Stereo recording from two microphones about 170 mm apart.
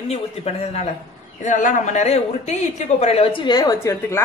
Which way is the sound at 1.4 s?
45° left (ahead or behind).